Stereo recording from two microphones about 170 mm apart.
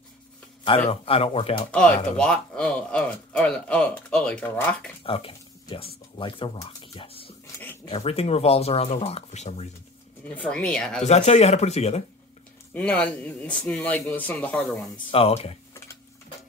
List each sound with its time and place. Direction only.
0.7 s speech: 35° left (ahead or behind)
2.1 s speech: 5° left (ahead or behind)
5.0 s a sound: 30° left (ahead or behind)
6.1 s speech: 30° left (ahead or behind)
10.2 s speech: 10° left (ahead or behind)
11.1 s speech: 40° left (ahead or behind)
12.7 s speech: 10° left (ahead or behind)
15.0 s speech: 35° left (ahead or behind)